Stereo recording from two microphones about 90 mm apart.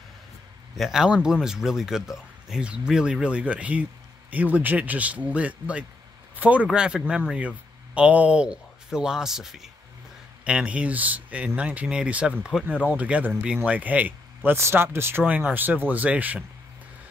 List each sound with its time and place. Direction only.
0.7 s speech: 5° right (ahead or behind)